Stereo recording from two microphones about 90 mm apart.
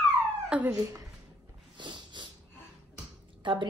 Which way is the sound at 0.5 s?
10° right (ahead or behind).